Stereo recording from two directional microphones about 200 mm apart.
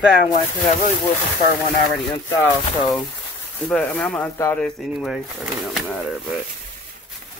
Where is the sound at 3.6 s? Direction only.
5° left (ahead or behind).